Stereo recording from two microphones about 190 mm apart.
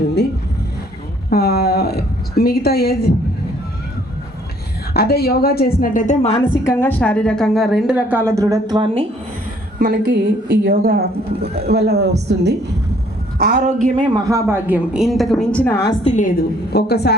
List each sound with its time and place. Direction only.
1.3 s a sound: 55° left (ahead or behind)
4.9 s a woman's voice: 55° left (ahead or behind); by 6.4 s 35° left (ahead or behind)
6.7 s a woman's voice: 10° left (ahead or behind); by 9.0 s 25° right (ahead or behind)
9.7 s a woman's voice: 45° right (ahead or behind); by 12.5 s 60° right (ahead or behind)
13.4 s speech: 45° right (ahead or behind)
14.1 s a woman's voice: 15° right (ahead or behind); by 16.0 s 15° left (ahead or behind)
16.0 s a woman's voice: 40° left (ahead or behind); by 17.2 s 60° left (ahead or behind)